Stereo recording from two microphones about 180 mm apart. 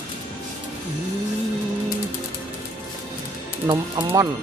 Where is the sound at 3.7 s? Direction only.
20° right (ahead or behind).